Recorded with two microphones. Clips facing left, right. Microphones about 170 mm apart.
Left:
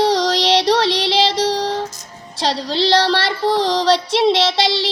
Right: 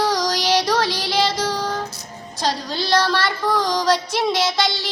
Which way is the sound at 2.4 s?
30° left (ahead or behind).